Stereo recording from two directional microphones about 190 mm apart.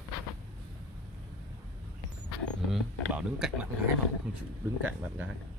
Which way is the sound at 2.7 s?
5° right (ahead or behind).